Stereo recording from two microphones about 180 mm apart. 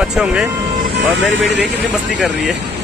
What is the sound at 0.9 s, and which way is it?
Speech, 90° right.